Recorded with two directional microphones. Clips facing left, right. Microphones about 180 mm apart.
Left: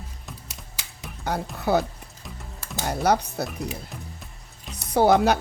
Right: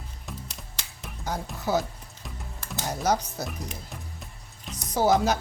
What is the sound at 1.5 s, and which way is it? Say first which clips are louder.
Speech: left 4 dB; 60° left (ahead or behind).